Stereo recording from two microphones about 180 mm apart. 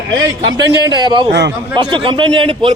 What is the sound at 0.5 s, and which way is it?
A man's voice, 20° right (ahead or behind).